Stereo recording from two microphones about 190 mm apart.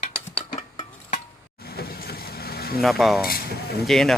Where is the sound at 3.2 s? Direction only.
55° left (ahead or behind).